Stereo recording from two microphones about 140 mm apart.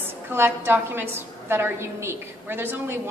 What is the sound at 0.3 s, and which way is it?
A woman's voice, 15° right (ahead or behind).